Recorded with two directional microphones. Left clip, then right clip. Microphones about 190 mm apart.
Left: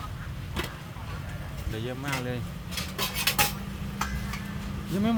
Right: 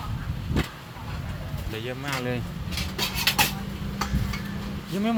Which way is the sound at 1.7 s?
20° right (ahead or behind).